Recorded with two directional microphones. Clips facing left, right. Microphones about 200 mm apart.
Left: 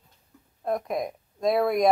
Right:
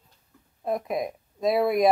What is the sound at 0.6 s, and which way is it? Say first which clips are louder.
Speech: even; centre (ahead or behind).